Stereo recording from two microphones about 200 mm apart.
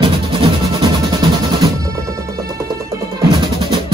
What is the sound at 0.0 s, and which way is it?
Music, 25° right (ahead or behind).